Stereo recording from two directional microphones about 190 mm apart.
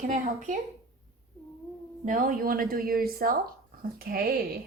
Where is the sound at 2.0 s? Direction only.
45° right (ahead or behind).